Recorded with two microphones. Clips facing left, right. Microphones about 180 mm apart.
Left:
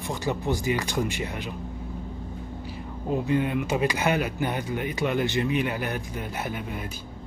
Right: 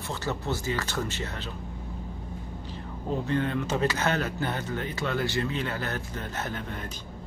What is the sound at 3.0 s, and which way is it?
Speech, 10° left (ahead or behind).